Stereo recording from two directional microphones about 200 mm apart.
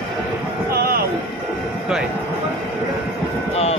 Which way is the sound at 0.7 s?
50° right (ahead or behind).